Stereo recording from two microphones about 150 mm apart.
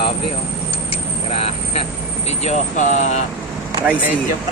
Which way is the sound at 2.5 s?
50° left (ahead or behind).